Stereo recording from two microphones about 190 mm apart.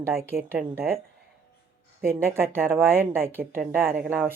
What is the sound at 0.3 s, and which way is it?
Speech, 50° right (ahead or behind).